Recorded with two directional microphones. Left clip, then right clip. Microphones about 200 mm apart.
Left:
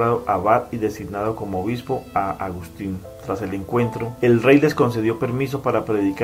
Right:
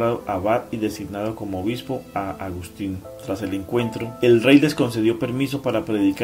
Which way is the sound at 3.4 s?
45° right (ahead or behind).